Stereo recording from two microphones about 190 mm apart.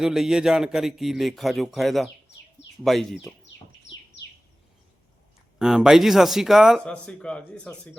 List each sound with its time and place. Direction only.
0.0 s speech: 5° right (ahead or behind)
3.9 s bird: 70° left (ahead or behind)
5.5 s speech: 5° right (ahead or behind)